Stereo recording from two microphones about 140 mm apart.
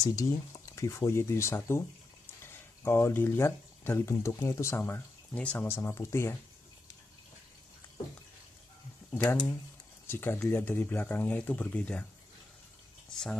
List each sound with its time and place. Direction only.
0.0 s speech: 25° left (ahead or behind)
9.1 s speech: 15° left (ahead or behind)
13.1 s speech: 5° left (ahead or behind)